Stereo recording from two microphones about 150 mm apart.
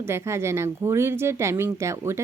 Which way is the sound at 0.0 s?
15° right (ahead or behind).